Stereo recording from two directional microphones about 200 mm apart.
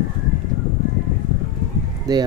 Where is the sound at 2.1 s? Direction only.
15° right (ahead or behind).